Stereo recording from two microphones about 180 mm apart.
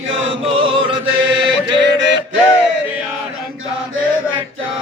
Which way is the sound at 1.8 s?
80° right.